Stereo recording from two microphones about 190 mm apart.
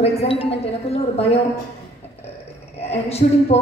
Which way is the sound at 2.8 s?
35° left (ahead or behind).